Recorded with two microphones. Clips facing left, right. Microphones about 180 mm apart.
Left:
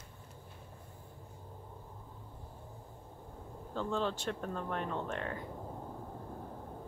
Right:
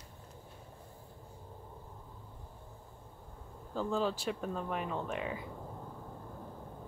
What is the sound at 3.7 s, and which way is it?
Speech, 5° right (ahead or behind).